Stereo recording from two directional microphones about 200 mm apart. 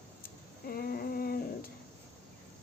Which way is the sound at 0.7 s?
50° left (ahead or behind).